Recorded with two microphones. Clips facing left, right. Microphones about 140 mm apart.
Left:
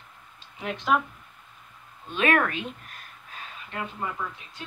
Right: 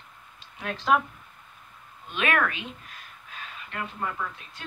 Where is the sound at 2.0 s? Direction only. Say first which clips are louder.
Left 3 dB; 30° left (ahead or behind).